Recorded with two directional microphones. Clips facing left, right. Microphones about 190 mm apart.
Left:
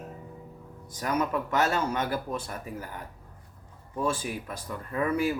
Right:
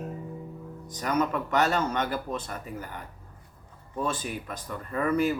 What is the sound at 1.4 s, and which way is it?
Speech, 5° left (ahead or behind).